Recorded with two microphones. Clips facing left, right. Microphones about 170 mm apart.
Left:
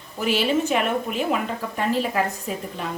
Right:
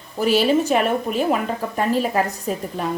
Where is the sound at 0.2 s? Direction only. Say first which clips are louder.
Right 4 dB; 40° right (ahead or behind).